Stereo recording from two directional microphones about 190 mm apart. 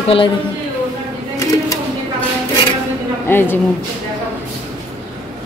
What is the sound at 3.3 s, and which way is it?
Speech, 10° left (ahead or behind).